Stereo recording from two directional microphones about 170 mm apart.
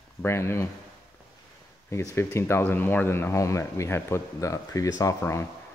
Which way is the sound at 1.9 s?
15° left (ahead or behind).